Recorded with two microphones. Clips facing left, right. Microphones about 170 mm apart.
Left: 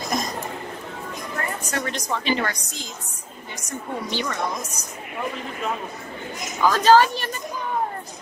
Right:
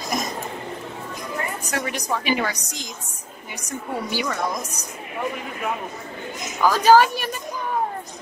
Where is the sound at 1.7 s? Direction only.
10° right (ahead or behind).